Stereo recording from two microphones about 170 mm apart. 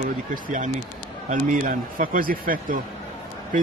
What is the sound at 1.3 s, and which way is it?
Speech, 50° right (ahead or behind).